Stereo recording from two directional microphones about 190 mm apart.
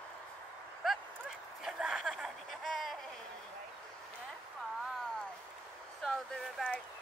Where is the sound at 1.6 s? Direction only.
Centre (ahead or behind).